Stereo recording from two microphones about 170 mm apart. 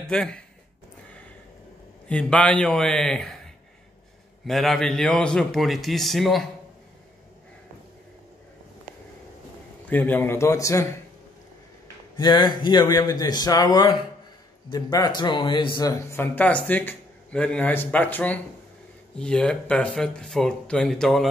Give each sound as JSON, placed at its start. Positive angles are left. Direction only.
{"t": 0.0, "sound": "speech", "side_deg": 5}
{"t": 2.0, "sound": "speech", "side_deg": 5}
{"t": 4.5, "sound": "speech", "side_deg": 0}
{"t": 9.8, "sound": "speech", "side_deg": 10}
{"t": 12.2, "sound": "speech", "side_deg": 25}